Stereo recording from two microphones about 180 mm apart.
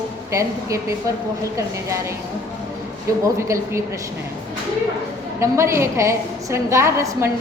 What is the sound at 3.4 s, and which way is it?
Speech, 15° right (ahead or behind).